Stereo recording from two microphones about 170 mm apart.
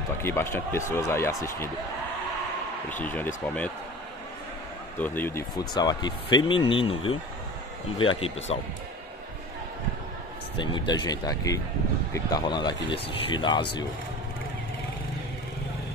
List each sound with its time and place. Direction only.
0.2 s speech: 15° left (ahead or behind)
2.9 s speech: 10° left (ahead or behind)
4.9 s speech: 10° left (ahead or behind)
5.8 s speech: 25° left (ahead or behind)
10.6 s speech: 25° left (ahead or behind)